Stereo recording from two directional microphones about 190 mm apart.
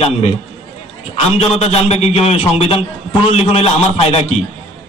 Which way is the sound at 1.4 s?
30° left (ahead or behind).